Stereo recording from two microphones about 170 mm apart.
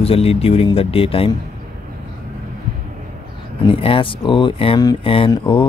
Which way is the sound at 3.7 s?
30° left (ahead or behind).